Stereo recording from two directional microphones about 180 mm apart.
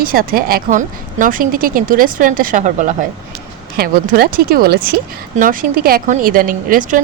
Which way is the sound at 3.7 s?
55° right (ahead or behind).